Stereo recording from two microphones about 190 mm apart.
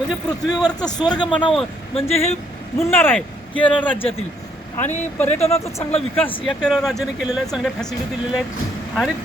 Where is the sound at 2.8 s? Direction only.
10° left (ahead or behind).